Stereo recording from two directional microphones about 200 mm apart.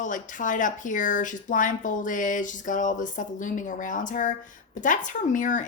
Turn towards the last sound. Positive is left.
turn(degrees=40)  # may be behind; listen again after turning